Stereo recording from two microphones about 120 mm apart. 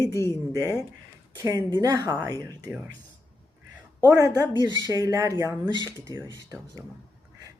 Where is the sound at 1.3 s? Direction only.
30° right (ahead or behind).